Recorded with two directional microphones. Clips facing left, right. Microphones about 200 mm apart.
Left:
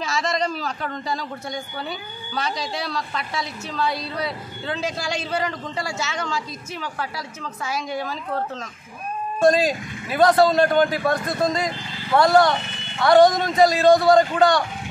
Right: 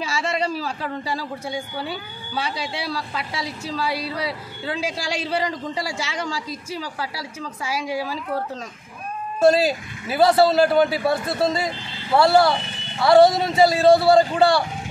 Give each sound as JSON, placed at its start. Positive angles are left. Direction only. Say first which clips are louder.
{"t": 0.0, "sound": "a man's voice", "louder": "even", "side_deg": -10}
{"t": 6.7, "sound": "a woman's voice", "louder": "even", "side_deg": -35}
{"t": 7.2, "sound": "a man's voice", "louder": "right 1 dB", "side_deg": -10}
{"t": 9.4, "sound": "a man's voice", "louder": "right 1 dB", "side_deg": -5}